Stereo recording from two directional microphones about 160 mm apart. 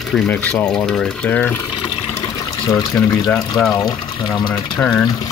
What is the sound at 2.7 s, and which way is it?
Speech, 20° left (ahead or behind).